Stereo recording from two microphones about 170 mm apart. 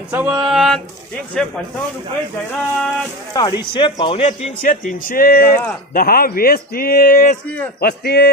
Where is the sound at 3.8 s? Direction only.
30° left (ahead or behind).